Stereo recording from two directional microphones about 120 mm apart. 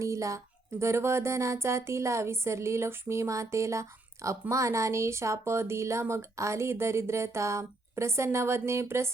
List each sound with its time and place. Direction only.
0.0 s speech: 25° right (ahead or behind)